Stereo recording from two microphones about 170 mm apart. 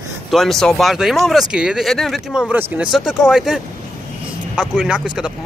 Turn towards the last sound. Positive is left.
turn(degrees=-5)  # may be behind; listen again after turning